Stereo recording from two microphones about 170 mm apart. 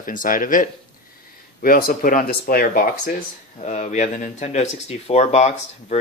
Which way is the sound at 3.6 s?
40° left (ahead or behind).